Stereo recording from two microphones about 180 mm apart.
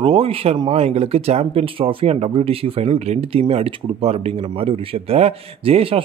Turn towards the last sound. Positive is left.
turn(degrees=-30)  # may be behind; listen again after turning